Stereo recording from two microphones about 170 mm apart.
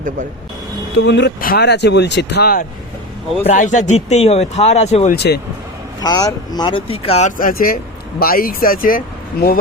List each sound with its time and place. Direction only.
0.9 s speech: 90° left; by 2.6 s 65° left (ahead or behind)
3.4 s speech: 45° left (ahead or behind)
5.1 s speech: 70° left (ahead or behind)
6.0 s speech: 25° left (ahead or behind); by 9.6 s 55° left (ahead or behind)